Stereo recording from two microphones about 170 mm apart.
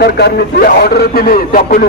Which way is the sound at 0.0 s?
70° left (ahead or behind).